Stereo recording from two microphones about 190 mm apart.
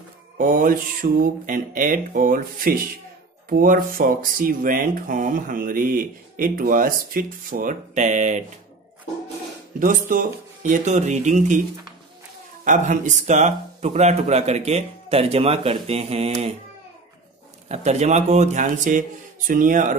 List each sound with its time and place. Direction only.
0.4 s speech: 45° right (ahead or behind)
9.8 s speech: 45° right (ahead or behind)
12.6 s speech: 40° right (ahead or behind)
17.6 s speech: 35° right (ahead or behind)